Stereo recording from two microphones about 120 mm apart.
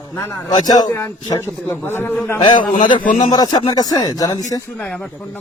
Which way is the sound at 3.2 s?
35° left (ahead or behind).